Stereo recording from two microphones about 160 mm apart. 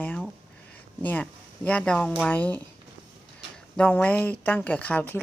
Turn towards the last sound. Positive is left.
turn(degrees=10)  # may be behind; listen again after turning